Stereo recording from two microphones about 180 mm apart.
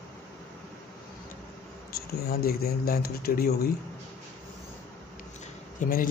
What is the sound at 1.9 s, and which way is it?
Speech, 60° left (ahead or behind).